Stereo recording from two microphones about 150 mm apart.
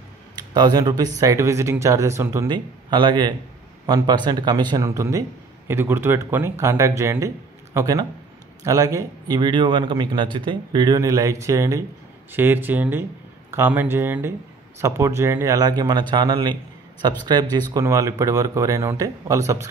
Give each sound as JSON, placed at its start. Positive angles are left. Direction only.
{"t": 0.4, "sound": "a man's voice", "side_deg": -25}